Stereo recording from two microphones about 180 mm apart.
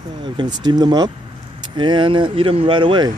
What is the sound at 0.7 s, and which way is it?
Speech, 25° right (ahead or behind).